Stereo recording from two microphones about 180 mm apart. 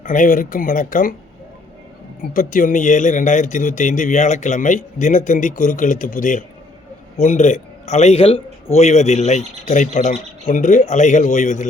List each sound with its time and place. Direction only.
0.0 s speech: 45° left (ahead or behind)
2.3 s a man's voice: 45° left (ahead or behind)